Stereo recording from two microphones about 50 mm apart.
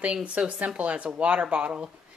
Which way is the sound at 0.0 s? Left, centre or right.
Right.